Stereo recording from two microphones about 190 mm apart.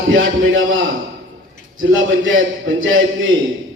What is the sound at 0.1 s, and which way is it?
A man's voice, 90° right.